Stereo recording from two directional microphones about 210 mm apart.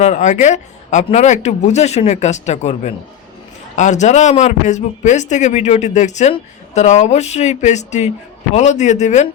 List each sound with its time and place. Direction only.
0.0 s speech: 35° left (ahead or behind)